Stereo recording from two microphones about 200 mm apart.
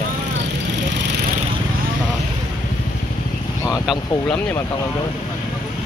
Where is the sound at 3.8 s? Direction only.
10° left (ahead or behind).